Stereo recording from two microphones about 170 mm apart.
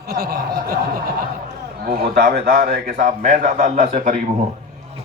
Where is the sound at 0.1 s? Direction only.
60° right (ahead or behind).